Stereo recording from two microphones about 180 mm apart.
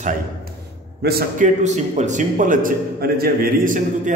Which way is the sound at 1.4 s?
40° right (ahead or behind).